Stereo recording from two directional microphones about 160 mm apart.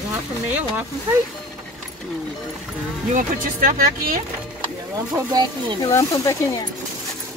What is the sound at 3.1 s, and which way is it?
Speech, 55° right (ahead or behind).